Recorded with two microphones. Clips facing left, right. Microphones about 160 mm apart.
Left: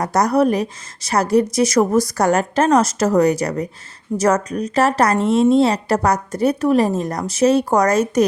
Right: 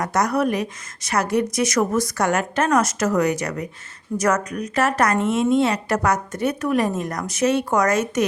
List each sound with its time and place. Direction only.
0.0 s a woman's voice: 35° left (ahead or behind)